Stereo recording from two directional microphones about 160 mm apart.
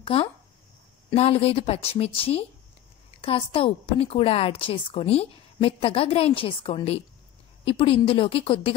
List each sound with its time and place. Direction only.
0.0 s a woman's voice: 35° left (ahead or behind)